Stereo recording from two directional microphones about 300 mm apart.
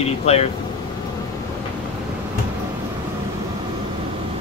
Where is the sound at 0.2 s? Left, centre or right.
Left.